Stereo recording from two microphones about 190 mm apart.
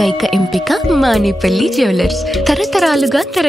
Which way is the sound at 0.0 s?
Centre (ahead or behind).